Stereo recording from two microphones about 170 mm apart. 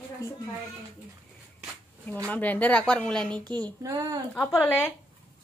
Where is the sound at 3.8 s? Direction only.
20° right (ahead or behind).